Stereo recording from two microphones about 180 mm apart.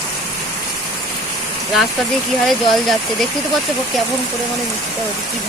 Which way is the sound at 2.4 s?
Centre (ahead or behind).